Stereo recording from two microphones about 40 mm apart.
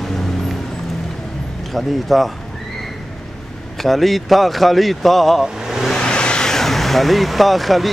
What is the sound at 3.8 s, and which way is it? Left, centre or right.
Speech, centre.